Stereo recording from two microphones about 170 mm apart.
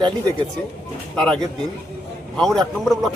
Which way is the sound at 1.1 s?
5° left (ahead or behind).